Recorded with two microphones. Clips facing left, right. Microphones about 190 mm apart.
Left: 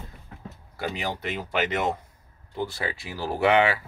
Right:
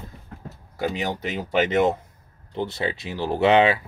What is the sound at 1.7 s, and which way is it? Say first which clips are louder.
Speech: right 7 dB; 25° right (ahead or behind).